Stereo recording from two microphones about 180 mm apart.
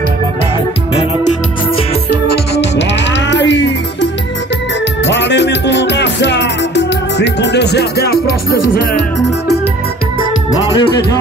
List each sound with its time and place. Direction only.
2.5 s music: 80° left
10.8 s speech: 25° left (ahead or behind)